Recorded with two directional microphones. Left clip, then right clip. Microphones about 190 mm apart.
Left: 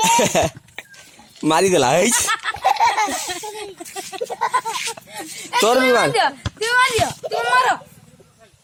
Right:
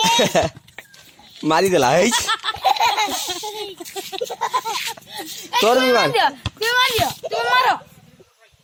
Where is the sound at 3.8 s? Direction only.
10° left (ahead or behind).